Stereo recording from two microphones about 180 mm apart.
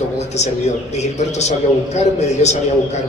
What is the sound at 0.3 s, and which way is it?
A man's voice, 40° left (ahead or behind).